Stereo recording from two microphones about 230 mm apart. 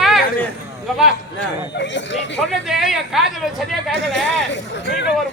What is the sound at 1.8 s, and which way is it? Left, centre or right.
Speech, left.